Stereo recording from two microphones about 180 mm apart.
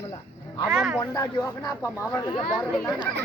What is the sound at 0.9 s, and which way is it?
Speech, 15° left (ahead or behind).